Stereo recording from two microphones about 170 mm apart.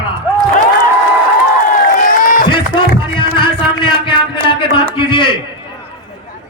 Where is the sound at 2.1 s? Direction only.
55° left (ahead or behind).